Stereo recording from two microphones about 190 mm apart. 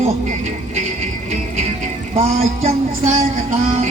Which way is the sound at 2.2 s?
30° right (ahead or behind).